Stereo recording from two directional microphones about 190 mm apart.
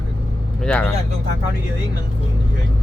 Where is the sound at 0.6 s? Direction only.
5° left (ahead or behind).